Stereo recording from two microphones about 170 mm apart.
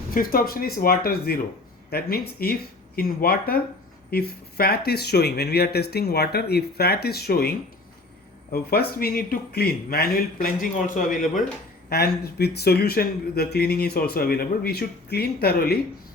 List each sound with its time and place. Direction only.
0.1 s speech: 55° left (ahead or behind)
8.5 s speech: 65° left (ahead or behind); by 11.4 s 50° left (ahead or behind)
11.9 s speech: 70° left (ahead or behind)